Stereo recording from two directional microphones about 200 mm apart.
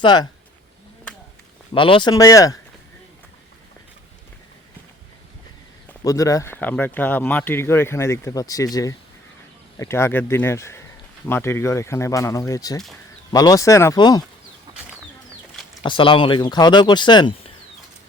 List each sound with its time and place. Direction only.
0.0 s speech: 20° left (ahead or behind)
1.7 s speech: 25° left (ahead or behind)
6.1 s speech: 15° left (ahead or behind)
15.8 s speech: 25° left (ahead or behind)